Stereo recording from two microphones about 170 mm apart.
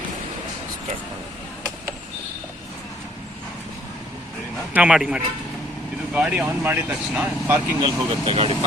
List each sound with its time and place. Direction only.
4.7 s a man's voice: 5° right (ahead or behind)
7.8 s speech: 30° right (ahead or behind)